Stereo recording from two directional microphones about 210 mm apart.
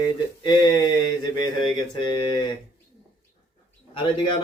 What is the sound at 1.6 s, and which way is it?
Speech, 20° left (ahead or behind).